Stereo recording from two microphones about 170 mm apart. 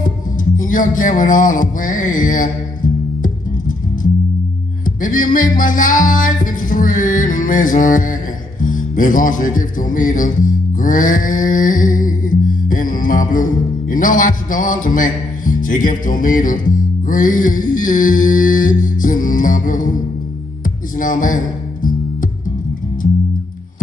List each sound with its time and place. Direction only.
0.6 s a sound: 50° left (ahead or behind)
4.8 s music: 50° left (ahead or behind)
21.0 s speech: 50° left (ahead or behind)